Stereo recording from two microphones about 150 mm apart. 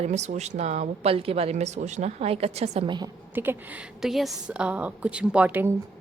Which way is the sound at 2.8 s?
30° right (ahead or behind).